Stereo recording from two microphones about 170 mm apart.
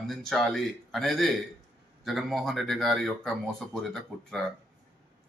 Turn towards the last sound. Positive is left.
turn(degrees=5)  # may be behind; listen again after turning